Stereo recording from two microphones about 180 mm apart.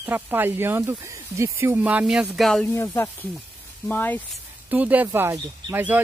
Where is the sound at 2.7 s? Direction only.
15° left (ahead or behind).